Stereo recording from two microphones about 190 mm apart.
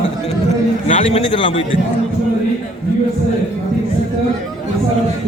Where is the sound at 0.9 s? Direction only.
35° left (ahead or behind).